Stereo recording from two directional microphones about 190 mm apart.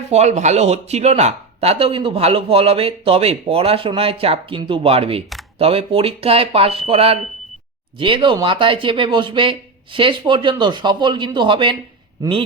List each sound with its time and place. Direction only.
0.1 s speech: 35° right (ahead or behind)